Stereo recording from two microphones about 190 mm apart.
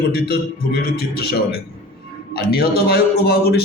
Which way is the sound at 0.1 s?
55° left (ahead or behind).